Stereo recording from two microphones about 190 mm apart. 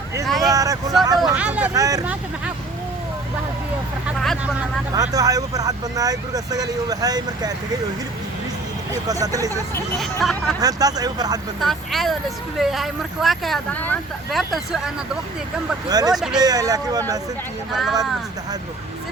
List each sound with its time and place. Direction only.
0.4 s vehicle: 20° right (ahead or behind)
1.2 s speech: 5° right (ahead or behind)
1.7 s speech: 20° right (ahead or behind)
4.9 s speech: 20° right (ahead or behind)
8.9 s speech: 20° right (ahead or behind)
10.0 s speech: centre (ahead or behind)
10.6 s speech: 20° right (ahead or behind)
11.6 s speech: centre (ahead or behind)
15.9 s speech: 20° right (ahead or behind)
16.1 s speech: centre (ahead or behind)
16.4 s speech: 20° right (ahead or behind)
17.7 s speech: centre (ahead or behind)